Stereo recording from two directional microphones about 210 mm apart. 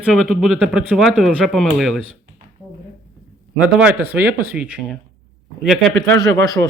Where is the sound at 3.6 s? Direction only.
5° right (ahead or behind).